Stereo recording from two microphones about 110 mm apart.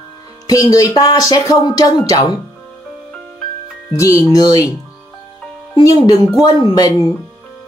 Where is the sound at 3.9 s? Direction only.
30° left (ahead or behind).